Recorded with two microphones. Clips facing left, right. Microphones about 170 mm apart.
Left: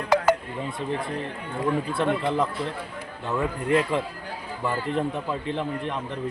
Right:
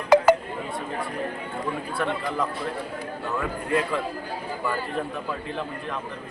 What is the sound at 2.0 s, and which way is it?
Speech, 20° left (ahead or behind).